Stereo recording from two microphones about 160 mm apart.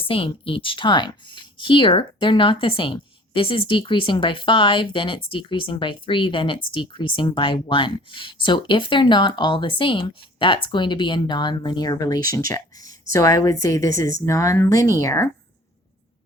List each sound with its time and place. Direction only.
0.0 s a woman's voice: 35° left (ahead or behind); by 15.3 s 20° left (ahead or behind)